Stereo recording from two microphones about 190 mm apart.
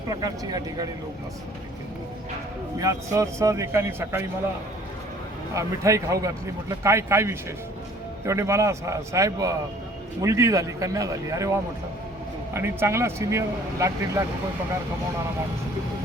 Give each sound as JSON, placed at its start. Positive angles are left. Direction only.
{"t": 0.1, "sound": "speech", "side_deg": -20}
{"t": 2.7, "sound": "speech", "side_deg": -15}
{"t": 5.5, "sound": "speech", "side_deg": -15}
{"t": 12.5, "sound": "speech", "side_deg": -15}